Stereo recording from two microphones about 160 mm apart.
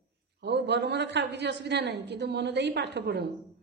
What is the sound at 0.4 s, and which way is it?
A woman's voice, 90° right.